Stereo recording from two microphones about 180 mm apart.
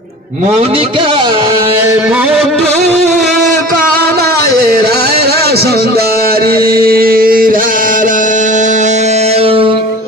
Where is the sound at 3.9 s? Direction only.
60° right (ahead or behind); by 9.8 s 30° right (ahead or behind).